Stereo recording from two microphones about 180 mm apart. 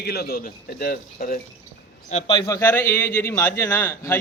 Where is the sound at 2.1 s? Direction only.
25° left (ahead or behind).